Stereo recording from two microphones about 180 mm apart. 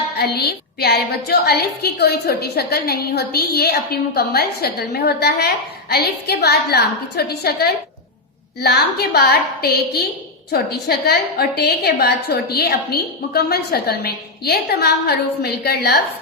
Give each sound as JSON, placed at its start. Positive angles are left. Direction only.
{"t": 0.2, "sound": "a woman's voice", "side_deg": 60}